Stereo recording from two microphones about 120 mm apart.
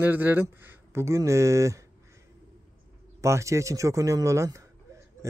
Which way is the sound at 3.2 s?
25° right (ahead or behind).